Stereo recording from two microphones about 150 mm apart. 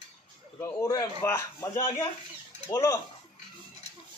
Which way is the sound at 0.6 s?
20° left (ahead or behind).